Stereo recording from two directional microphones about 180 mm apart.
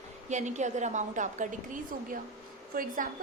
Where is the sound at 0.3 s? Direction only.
40° right (ahead or behind).